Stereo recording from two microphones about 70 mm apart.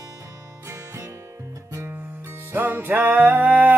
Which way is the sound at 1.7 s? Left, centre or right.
Right.